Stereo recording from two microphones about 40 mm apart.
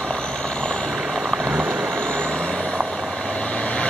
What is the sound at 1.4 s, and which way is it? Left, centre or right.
Rain on surface, right.